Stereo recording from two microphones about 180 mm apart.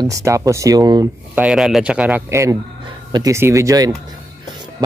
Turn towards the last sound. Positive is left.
turn(degrees=-20)  # may be behind; listen again after turning